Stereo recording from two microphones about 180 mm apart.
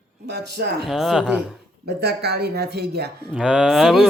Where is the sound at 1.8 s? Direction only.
65° right (ahead or behind).